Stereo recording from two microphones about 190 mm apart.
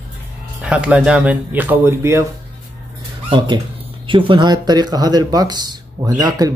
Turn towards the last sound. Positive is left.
turn(degrees=-20)  # may be behind; listen again after turning